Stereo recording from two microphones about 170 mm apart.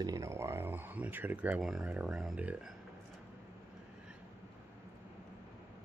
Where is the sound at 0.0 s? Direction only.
20° right (ahead or behind).